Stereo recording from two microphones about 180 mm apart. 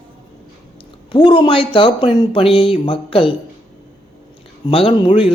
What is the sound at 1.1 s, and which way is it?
A man's voice, 25° left (ahead or behind).